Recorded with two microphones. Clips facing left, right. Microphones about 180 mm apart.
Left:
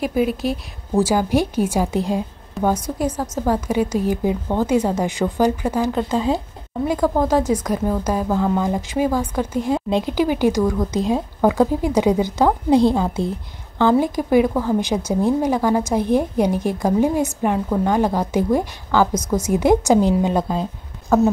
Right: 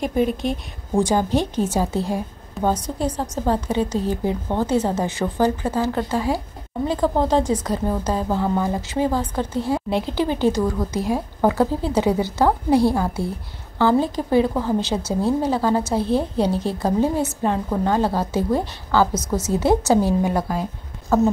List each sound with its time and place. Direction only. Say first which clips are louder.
0.0 s a woman's voice: left 1 dB; 5° left (ahead or behind)
7.2 s a woman's voice: left 1 dB; 10° left (ahead or behind)
8.3 s speech: left 2 dB; 10° right (ahead or behind)
8.6 s a woman's voice: left 2 dB; 15° left (ahead or behind)